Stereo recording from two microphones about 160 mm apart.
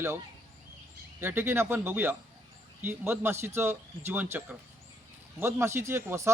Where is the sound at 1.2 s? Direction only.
15° right (ahead or behind).